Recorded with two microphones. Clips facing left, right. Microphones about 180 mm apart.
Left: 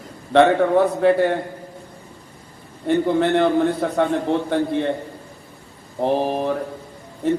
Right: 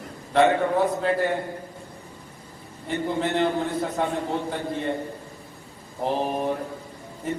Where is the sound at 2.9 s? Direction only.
70° left (ahead or behind).